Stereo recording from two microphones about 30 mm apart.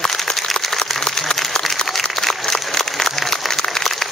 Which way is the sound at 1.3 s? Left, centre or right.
Left.